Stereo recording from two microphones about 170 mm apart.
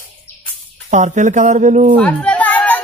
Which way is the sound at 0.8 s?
45° right (ahead or behind).